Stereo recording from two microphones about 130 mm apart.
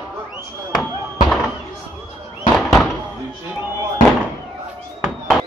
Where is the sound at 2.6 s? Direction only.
Centre (ahead or behind).